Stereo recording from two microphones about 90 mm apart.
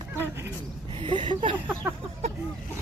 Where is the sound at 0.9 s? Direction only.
65° right (ahead or behind).